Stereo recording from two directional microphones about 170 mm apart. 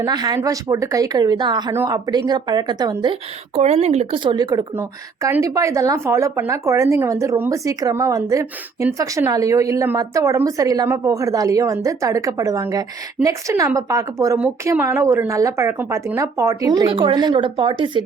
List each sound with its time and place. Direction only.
0.0 s speech: 25° right (ahead or behind)
1.7 s a woman's voice: 15° right (ahead or behind)
2.0 s speech: 25° right (ahead or behind)
3.5 s speech: 40° right (ahead or behind)
4.2 s speech: 25° right (ahead or behind)
4.7 s a woman's voice: 10° right (ahead or behind); by 18.0 s 30° right (ahead or behind)